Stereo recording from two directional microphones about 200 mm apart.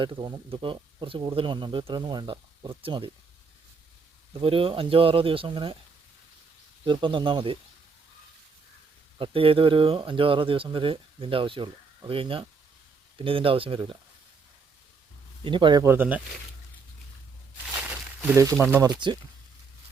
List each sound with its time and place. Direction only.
0.0 s speech: 20° right (ahead or behind)
4.4 s speech: 25° right (ahead or behind)
6.8 s speech: 25° right (ahead or behind)
9.1 s speech: 25° right (ahead or behind)
15.4 s speech: 25° right (ahead or behind); by 16.2 s 10° right (ahead or behind)
17.8 s a sound: 10° right (ahead or behind)
18.6 s speech: 15° right (ahead or behind)